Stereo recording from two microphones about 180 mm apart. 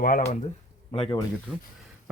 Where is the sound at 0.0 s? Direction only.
50° left (ahead or behind).